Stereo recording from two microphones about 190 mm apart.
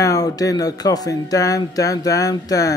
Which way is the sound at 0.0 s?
20° left (ahead or behind).